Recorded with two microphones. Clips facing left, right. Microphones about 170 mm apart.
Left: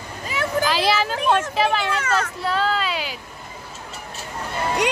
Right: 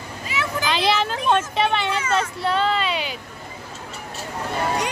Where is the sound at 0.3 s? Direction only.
50° left (ahead or behind).